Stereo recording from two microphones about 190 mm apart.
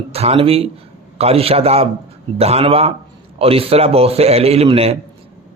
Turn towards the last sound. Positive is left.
turn(degrees=-30)  # may be behind; listen again after turning